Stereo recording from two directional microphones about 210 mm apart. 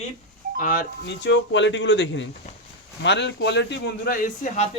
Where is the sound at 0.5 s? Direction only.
40° left (ahead or behind).